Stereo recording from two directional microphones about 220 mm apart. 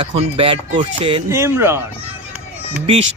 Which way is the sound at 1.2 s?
10° right (ahead or behind).